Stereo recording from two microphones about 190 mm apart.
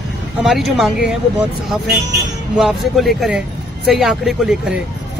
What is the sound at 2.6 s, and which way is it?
Speech, centre (ahead or behind).